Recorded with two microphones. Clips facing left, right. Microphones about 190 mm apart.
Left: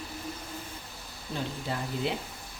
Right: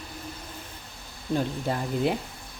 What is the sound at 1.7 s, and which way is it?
Speech, 45° right (ahead or behind).